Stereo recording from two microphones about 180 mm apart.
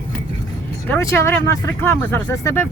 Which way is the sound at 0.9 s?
15° left (ahead or behind).